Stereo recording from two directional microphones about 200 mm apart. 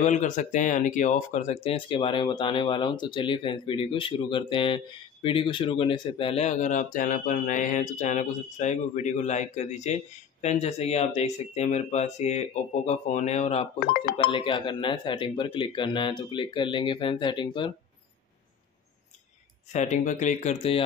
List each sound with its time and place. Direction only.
0.0 s speech: 35° left (ahead or behind)
14.1 s speech: 25° left (ahead or behind)
19.7 s speech: 35° left (ahead or behind)